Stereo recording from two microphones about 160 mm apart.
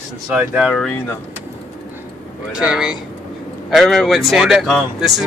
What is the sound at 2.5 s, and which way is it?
Speech, 5° right (ahead or behind).